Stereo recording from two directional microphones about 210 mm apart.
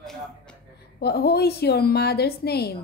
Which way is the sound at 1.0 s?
50° left (ahead or behind).